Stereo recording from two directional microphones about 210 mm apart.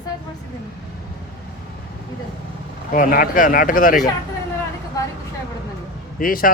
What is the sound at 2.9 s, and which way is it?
Speech, 40° left (ahead or behind).